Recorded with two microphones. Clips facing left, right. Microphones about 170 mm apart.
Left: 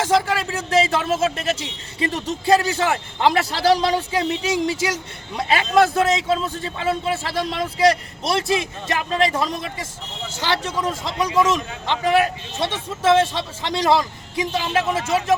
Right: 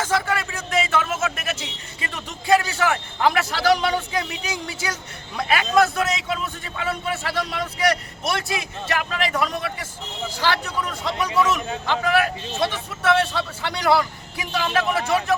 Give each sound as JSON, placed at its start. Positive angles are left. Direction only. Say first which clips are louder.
{"t": 0.1, "sound": "a man's voice", "louder": "left 4 dB", "side_deg": 25}